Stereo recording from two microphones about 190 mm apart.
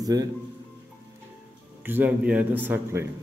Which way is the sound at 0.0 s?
20° right (ahead or behind).